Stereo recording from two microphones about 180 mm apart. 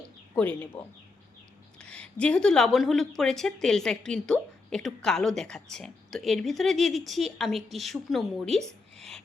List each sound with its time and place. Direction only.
0.3 s speech: 10° left (ahead or behind)
1.8 s a woman's voice: 5° left (ahead or behind)